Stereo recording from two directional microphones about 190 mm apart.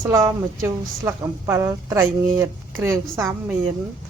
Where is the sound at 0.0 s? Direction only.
15° right (ahead or behind).